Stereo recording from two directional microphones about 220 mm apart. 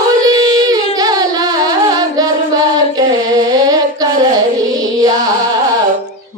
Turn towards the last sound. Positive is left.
turn(degrees=-15)  # may be behind; listen again after turning